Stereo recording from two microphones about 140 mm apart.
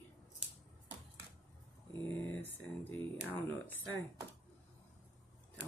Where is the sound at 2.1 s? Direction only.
15° left (ahead or behind).